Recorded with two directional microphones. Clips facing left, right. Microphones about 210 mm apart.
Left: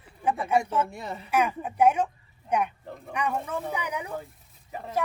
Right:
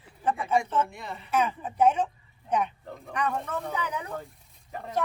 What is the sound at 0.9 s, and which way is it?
Speech, 40° left (ahead or behind).